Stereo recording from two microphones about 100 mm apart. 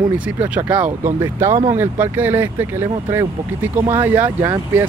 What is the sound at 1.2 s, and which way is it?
Speech, 25° right (ahead or behind).